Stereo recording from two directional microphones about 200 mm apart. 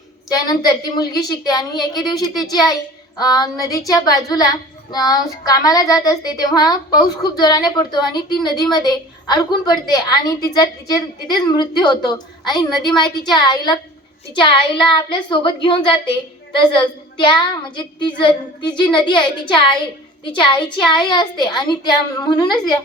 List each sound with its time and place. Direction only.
0.3 s a woman's voice: 20° left (ahead or behind)